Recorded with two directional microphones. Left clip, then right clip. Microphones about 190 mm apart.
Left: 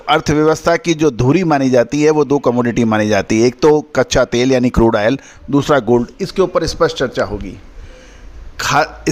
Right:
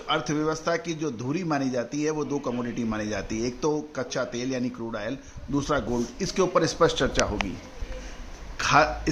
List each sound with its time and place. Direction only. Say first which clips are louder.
0.0 s a man's voice: left 14 dB; 60° left (ahead or behind)
6.2 s speech: left 8 dB; 40° left (ahead or behind)
8.5 s speech: left 6 dB; 55° left (ahead or behind)